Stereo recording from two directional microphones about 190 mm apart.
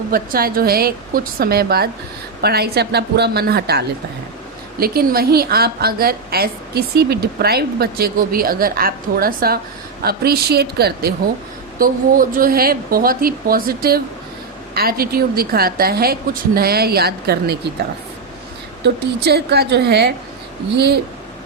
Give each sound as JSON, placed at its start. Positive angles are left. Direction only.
{"t": 0.1, "sound": "a woman's voice", "side_deg": -50}
{"t": 18.8, "sound": "speech", "side_deg": -60}